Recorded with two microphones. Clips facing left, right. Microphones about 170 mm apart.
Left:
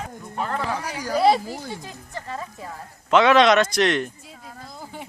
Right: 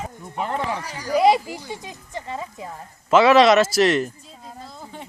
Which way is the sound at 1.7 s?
20° right (ahead or behind).